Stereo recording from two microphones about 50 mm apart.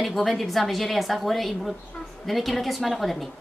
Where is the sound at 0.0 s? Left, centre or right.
Centre.